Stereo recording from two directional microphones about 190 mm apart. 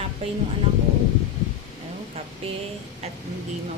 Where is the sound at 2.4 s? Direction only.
30° right (ahead or behind).